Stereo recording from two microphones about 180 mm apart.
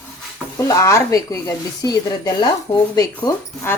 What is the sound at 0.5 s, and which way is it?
Speech, 15° left (ahead or behind).